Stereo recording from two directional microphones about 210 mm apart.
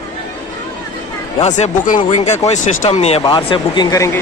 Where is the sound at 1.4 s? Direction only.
35° left (ahead or behind).